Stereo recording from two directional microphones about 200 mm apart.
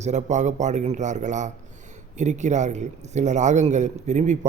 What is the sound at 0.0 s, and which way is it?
A man's voice, 35° right (ahead or behind).